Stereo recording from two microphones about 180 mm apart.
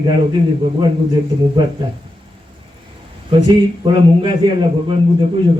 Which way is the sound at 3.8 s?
25° right (ahead or behind).